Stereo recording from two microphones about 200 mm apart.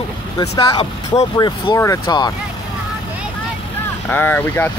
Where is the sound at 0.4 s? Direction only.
20° left (ahead or behind).